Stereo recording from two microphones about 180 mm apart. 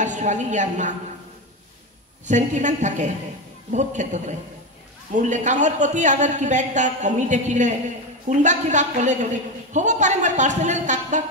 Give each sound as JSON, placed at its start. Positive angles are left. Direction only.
{"t": 0.0, "sound": "a woman's voice", "side_deg": -40}
{"t": 2.2, "sound": "a woman's voice", "side_deg": -40}